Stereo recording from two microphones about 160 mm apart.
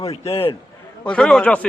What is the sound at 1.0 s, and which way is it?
Speech, 5° left (ahead or behind).